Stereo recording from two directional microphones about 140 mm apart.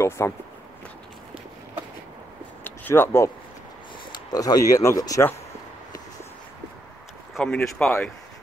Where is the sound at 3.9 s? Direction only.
30° left (ahead or behind).